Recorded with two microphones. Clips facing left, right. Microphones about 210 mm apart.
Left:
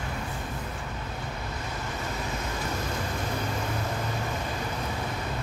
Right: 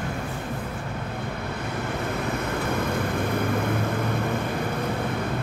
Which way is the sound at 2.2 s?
60° right (ahead or behind).